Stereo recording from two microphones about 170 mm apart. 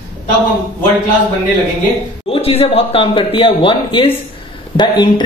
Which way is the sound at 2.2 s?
35° left (ahead or behind).